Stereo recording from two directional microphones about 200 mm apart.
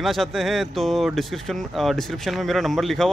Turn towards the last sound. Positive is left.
turn(degrees=0)  # may be behind; listen again after turning